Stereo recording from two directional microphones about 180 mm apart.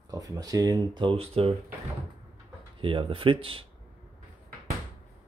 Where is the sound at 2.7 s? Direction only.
30° right (ahead or behind).